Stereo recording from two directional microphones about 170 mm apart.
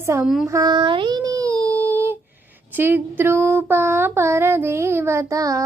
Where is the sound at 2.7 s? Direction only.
10° right (ahead or behind).